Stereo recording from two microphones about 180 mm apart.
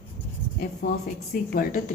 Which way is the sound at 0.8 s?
55° left (ahead or behind).